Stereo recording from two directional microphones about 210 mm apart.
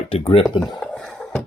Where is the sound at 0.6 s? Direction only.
Centre (ahead or behind).